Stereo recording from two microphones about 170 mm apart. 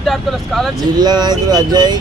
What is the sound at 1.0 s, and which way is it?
Speech, 25° right (ahead or behind).